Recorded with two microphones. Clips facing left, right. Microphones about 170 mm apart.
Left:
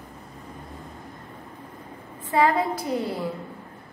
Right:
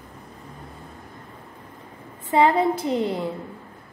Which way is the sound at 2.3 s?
25° right (ahead or behind).